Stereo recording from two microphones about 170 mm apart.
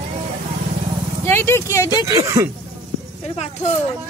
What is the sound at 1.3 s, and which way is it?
Vehicle, 15° left (ahead or behind).